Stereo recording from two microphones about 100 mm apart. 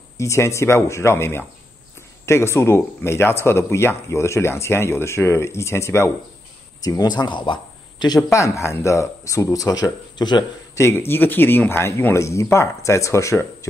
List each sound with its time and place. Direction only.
0.2 s speech: 30° left (ahead or behind)
6.8 s speech: 40° left (ahead or behind)
8.3 s speech: 30° left (ahead or behind); by 10.4 s 45° left (ahead or behind)
10.7 s speech: 25° left (ahead or behind)